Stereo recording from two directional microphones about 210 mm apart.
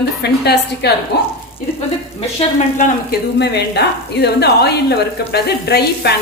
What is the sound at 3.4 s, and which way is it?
A woman's voice, 55° left (ahead or behind).